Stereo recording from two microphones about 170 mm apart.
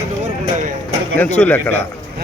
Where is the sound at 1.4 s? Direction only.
10° left (ahead or behind).